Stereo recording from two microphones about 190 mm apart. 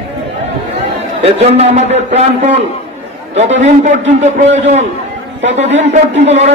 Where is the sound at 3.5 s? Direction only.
40° right (ahead or behind).